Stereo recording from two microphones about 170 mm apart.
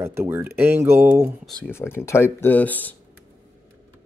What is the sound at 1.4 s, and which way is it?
Speech, 10° left (ahead or behind).